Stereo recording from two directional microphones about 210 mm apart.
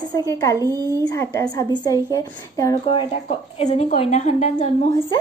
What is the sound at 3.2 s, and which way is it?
A woman's voice, 30° left (ahead or behind).